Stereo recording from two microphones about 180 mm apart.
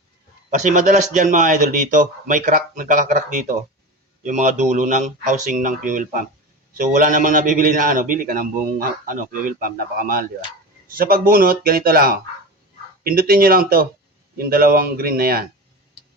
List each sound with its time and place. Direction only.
0.5 s a man's voice: 45° right (ahead or behind)